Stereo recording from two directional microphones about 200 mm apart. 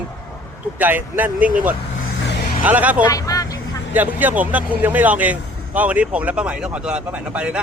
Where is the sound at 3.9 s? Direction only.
10° right (ahead or behind).